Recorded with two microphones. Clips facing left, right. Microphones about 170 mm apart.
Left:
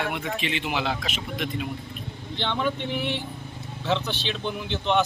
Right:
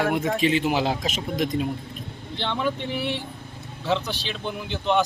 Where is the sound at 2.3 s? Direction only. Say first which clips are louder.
Right 1 dB; 5° right (ahead or behind).